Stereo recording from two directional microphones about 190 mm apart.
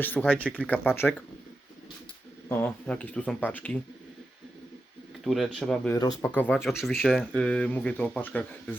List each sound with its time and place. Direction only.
0.0 s speech: 10° left (ahead or behind)
2.5 s speech: 10° left (ahead or behind)
5.2 s speech: centre (ahead or behind)
5.9 s speech: 20° left (ahead or behind)